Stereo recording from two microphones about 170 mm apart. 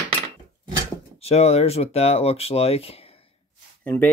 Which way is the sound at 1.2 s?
40° left (ahead or behind).